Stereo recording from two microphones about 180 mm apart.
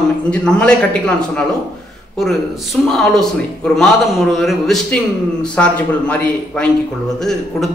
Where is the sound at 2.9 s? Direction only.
Centre (ahead or behind).